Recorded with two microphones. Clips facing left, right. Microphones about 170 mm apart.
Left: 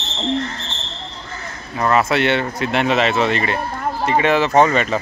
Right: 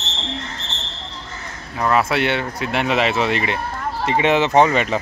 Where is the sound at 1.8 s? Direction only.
5° right (ahead or behind).